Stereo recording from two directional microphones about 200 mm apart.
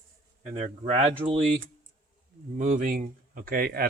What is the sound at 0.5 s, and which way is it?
Speech, 30° right (ahead or behind).